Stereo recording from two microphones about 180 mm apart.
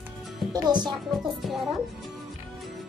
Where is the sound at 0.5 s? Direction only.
25° right (ahead or behind).